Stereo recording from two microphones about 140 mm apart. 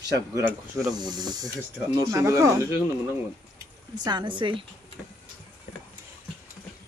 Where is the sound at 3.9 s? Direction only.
30° right (ahead or behind).